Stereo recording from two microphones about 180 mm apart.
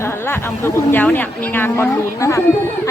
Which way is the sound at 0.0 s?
15° left (ahead or behind).